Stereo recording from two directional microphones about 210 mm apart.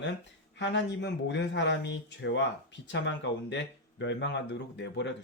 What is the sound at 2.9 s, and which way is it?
Speech, 60° left (ahead or behind).